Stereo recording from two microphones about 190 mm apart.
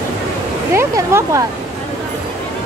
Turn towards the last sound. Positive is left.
turn(degrees=-15)  # may be behind; listen again after turning